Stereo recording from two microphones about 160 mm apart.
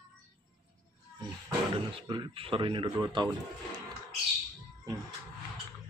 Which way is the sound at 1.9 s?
30° right (ahead or behind).